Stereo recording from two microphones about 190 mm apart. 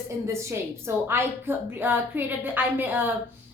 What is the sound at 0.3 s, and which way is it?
A woman's voice, 15° right (ahead or behind).